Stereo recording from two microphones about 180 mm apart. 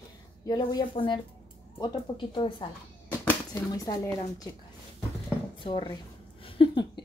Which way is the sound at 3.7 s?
20° left (ahead or behind).